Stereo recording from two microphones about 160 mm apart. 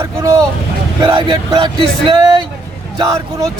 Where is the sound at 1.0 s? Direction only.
35° right (ahead or behind).